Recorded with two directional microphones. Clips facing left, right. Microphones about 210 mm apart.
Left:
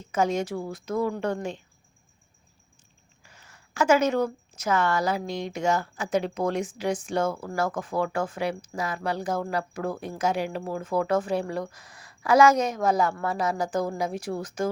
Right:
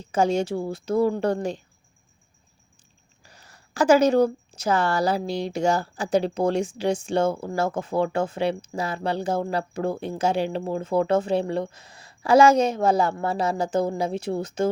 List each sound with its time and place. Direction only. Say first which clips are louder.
0.0 s speech: right 3 dB; 30° right (ahead or behind)
3.2 s a woman's voice: right 3 dB; 35° right (ahead or behind)